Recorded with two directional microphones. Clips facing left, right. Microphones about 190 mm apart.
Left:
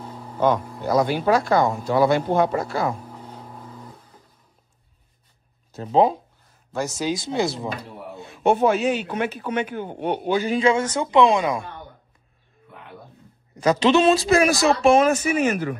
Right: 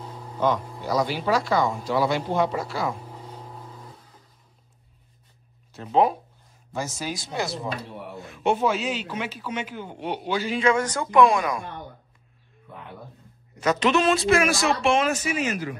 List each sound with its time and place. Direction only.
0.4 s speech: 55° left (ahead or behind)
5.7 s speech: 35° left (ahead or behind)
7.1 s speech: 25° left (ahead or behind)
8.5 s a man's voice: 55° left (ahead or behind)
10.6 s speech: 25° left (ahead or behind)
13.6 s speech: 30° left (ahead or behind); by 15.7 s 55° left (ahead or behind)